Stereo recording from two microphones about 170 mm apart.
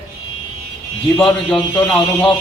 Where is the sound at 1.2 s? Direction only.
5° left (ahead or behind).